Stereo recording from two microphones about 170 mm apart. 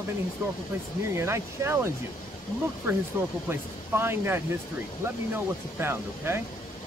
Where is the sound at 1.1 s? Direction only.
15° right (ahead or behind).